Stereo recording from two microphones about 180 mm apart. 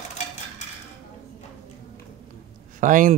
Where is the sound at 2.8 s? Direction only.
45° right (ahead or behind).